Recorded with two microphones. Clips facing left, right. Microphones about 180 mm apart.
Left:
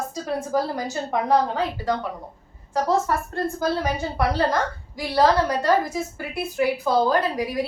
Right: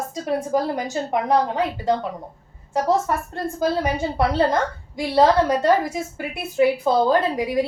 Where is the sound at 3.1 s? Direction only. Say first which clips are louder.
Even; 20° right (ahead or behind).